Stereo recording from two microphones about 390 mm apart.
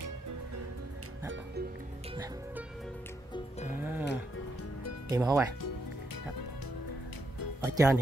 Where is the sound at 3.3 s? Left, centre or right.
Centre.